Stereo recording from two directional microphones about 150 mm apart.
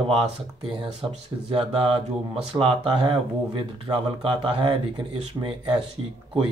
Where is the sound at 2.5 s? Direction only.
35° right (ahead or behind).